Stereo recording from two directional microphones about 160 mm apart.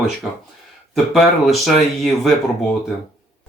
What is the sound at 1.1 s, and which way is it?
Speech, centre (ahead or behind).